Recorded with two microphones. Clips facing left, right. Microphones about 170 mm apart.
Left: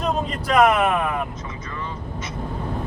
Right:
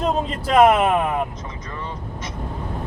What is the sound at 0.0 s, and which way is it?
Speech, 30° right (ahead or behind).